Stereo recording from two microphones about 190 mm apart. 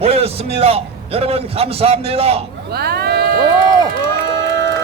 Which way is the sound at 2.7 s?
55° right (ahead or behind).